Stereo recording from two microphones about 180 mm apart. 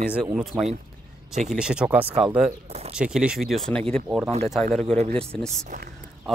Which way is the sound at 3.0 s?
5° right (ahead or behind).